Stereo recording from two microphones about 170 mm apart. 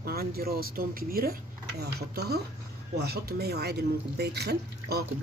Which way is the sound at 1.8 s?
70° right (ahead or behind).